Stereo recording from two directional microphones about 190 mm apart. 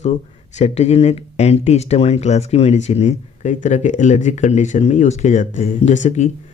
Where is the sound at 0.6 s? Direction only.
35° left (ahead or behind).